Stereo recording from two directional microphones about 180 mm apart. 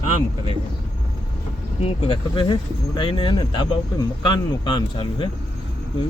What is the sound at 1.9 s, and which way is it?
Speech, 30° left (ahead or behind).